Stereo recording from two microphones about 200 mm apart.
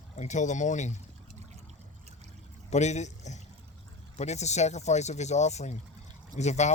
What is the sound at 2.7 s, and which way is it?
Speech, 35° left (ahead or behind).